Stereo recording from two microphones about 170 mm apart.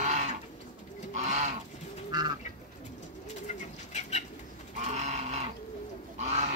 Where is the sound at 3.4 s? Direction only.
45° left (ahead or behind).